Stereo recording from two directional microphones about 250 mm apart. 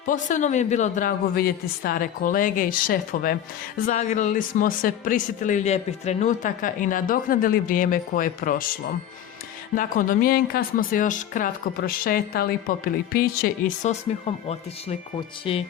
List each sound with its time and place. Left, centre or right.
0.0 s speech: left
9.7 s speech: left
14.3 s speech: left